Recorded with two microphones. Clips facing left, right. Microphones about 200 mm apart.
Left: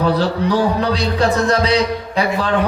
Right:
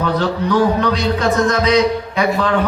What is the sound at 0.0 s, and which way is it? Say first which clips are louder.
Speech: left 1 dB; 35° left (ahead or behind).